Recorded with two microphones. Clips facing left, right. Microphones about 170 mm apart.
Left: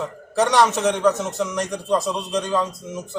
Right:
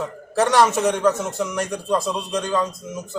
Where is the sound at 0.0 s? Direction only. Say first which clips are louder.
Even; 5° right (ahead or behind).